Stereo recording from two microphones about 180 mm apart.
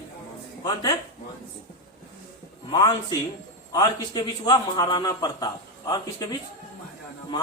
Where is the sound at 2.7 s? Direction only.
20° left (ahead or behind).